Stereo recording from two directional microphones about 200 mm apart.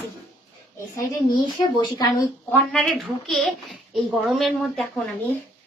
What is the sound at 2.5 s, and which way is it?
A child's voice, 5° left (ahead or behind).